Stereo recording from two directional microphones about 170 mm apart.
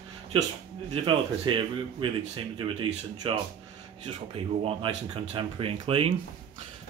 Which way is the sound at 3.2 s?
30° right (ahead or behind).